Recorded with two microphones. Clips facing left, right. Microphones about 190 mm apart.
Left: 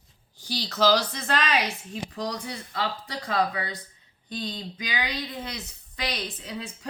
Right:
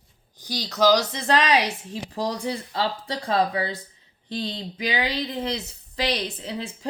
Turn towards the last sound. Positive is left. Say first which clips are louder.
# right 4 dB
turn(degrees=-30)  # may be behind; listen again after turning